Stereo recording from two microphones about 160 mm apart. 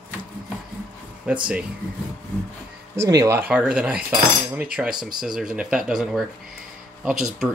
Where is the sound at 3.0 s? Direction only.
20° right (ahead or behind).